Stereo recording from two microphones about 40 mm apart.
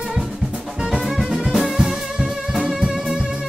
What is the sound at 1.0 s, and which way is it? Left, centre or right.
Music, centre.